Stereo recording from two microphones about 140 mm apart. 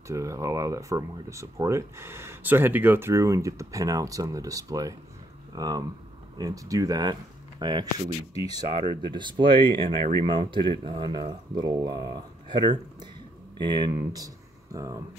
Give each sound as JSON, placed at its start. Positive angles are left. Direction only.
{"t": 0.1, "sound": "speech", "side_deg": -20}